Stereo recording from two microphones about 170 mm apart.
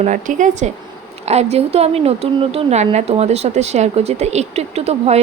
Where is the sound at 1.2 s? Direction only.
40° right (ahead or behind).